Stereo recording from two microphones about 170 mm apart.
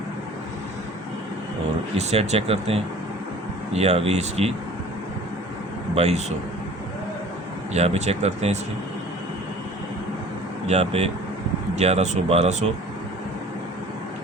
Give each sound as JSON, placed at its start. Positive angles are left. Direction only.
{"t": 2.0, "sound": "speech", "side_deg": -40}
{"t": 5.9, "sound": "speech", "side_deg": -40}
{"t": 7.7, "sound": "speech", "side_deg": -40}
{"t": 10.7, "sound": "speech", "side_deg": -40}